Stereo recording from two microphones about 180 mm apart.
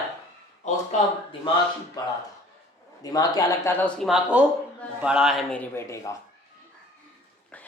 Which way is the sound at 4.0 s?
Centre (ahead or behind).